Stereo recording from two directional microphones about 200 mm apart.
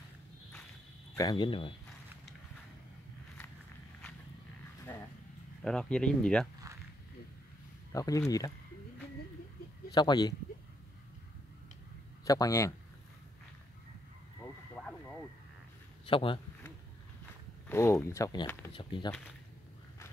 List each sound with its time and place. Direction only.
1.1 s speech: 20° left (ahead or behind)
4.9 s vehicle: 10° left (ahead or behind)
5.6 s speech: 5° left (ahead or behind)
7.9 s speech: 15° left (ahead or behind)
9.9 s speech: 20° left (ahead or behind)
12.3 s speech: 15° left (ahead or behind)
14.4 s a sound: 5° left (ahead or behind)
16.1 s speech: 25° left (ahead or behind)
17.6 s speech: 15° left (ahead or behind)